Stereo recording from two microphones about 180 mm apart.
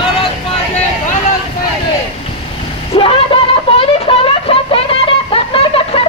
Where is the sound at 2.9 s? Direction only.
30° left (ahead or behind).